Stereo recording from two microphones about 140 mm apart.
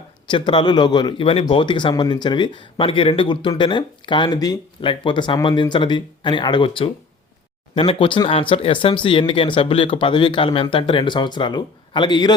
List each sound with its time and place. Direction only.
0.3 s speech: 35° left (ahead or behind)